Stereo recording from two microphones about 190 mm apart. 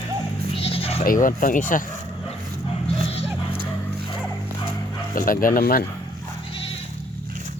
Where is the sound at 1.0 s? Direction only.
45° left (ahead or behind).